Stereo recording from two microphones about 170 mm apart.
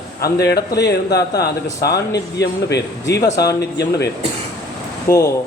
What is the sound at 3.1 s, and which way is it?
Speech, 70° left (ahead or behind).